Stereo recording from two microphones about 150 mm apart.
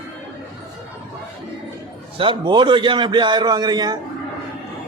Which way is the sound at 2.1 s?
35° right (ahead or behind).